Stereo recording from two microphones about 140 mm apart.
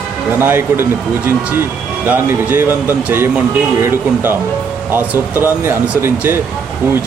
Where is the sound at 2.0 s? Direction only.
15° right (ahead or behind).